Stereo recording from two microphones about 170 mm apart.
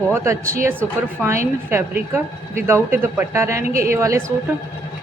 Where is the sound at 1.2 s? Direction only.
15° right (ahead or behind).